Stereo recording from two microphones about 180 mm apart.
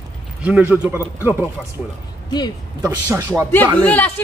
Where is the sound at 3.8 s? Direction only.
10° left (ahead or behind).